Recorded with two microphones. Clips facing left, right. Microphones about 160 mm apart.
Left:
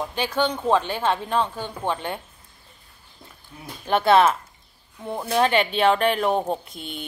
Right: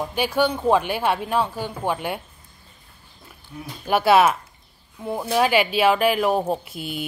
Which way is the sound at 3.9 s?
5° right (ahead or behind).